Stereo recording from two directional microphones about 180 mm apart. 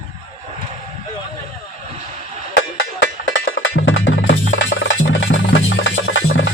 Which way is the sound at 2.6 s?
80° left.